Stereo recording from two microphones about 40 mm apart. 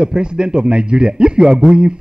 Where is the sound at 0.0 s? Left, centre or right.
Right.